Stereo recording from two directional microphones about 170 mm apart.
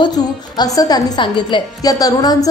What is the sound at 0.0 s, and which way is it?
A woman's voice, 25° left (ahead or behind).